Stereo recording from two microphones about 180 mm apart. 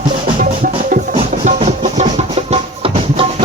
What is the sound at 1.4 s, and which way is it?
Music, 40° right (ahead or behind).